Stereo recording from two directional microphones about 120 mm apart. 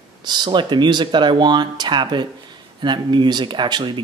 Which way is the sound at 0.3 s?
40° right (ahead or behind).